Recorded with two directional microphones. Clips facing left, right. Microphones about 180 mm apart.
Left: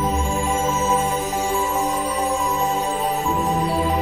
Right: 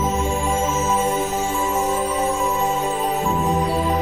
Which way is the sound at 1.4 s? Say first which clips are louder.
Even; 15° left (ahead or behind).